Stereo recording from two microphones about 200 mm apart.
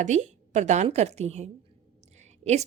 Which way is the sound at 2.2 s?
35° right (ahead or behind).